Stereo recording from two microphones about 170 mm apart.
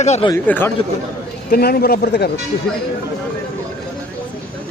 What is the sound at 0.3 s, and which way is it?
Speech, 10° left (ahead or behind).